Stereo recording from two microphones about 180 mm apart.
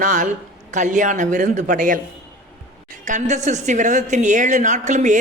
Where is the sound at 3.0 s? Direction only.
45° right (ahead or behind).